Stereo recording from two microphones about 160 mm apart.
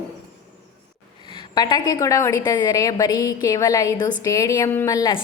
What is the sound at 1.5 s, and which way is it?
A woman's voice, 25° left (ahead or behind).